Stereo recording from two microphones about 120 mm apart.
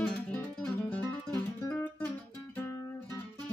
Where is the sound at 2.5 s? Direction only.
20° left (ahead or behind).